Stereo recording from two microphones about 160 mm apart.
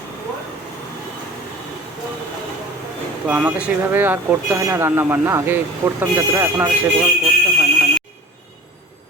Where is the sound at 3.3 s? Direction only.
10° right (ahead or behind).